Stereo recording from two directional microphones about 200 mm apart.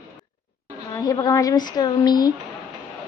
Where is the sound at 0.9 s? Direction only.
20° left (ahead or behind).